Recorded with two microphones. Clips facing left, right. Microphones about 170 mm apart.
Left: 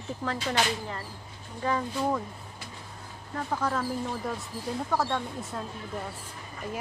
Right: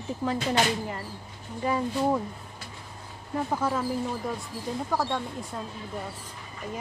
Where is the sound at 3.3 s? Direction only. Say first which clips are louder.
Right 2 dB; 10° right (ahead or behind).